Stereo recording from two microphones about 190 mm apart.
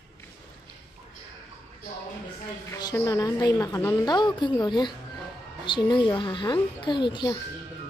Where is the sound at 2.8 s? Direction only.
15° left (ahead or behind).